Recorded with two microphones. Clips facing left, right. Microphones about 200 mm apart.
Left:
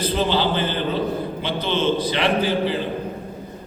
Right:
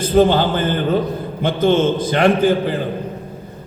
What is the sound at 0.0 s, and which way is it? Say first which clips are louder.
A man's voice: right 7 dB; 50° right (ahead or behind).